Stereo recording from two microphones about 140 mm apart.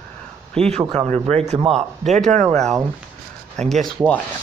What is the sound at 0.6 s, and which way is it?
Speech, 50° right (ahead or behind).